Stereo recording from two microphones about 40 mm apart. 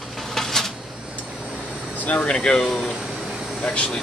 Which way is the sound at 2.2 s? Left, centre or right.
Centre.